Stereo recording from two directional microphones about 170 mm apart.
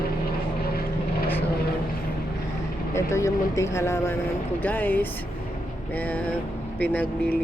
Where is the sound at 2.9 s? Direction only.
15° left (ahead or behind).